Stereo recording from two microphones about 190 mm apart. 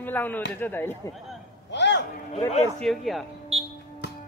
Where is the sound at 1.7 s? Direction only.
65° left (ahead or behind).